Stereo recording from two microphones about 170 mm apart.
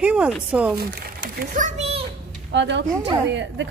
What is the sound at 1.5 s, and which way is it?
Speech, 50° right (ahead or behind).